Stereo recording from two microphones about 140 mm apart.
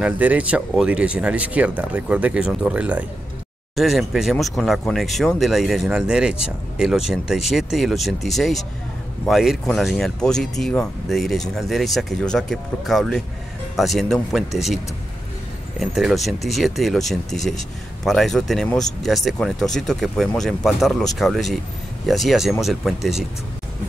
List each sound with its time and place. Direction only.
0.0 s speech: 10° right (ahead or behind)
15.8 s speech: centre (ahead or behind)